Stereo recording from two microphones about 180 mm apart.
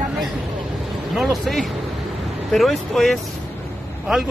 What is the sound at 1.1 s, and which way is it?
Speech, centre (ahead or behind).